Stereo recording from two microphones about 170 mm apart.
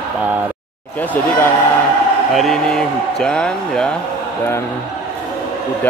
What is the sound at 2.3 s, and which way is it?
A man's voice, centre (ahead or behind).